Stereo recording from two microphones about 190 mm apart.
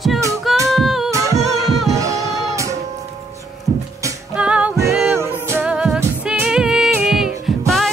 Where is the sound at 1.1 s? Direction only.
15° right (ahead or behind).